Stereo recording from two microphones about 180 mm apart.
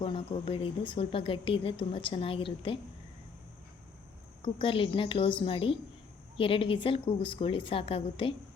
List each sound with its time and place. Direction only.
0.0 s speech: 30° left (ahead or behind)
4.4 s a woman's voice: 30° left (ahead or behind)